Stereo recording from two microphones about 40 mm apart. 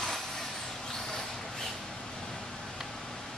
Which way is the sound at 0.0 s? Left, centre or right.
Centre.